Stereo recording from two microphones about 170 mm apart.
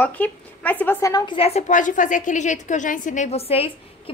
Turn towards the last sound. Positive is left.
turn(degrees=35)  # may be behind; listen again after turning